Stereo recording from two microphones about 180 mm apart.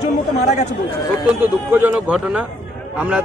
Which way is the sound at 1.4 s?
10° right (ahead or behind).